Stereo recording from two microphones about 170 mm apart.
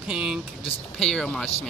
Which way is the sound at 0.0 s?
5° right (ahead or behind).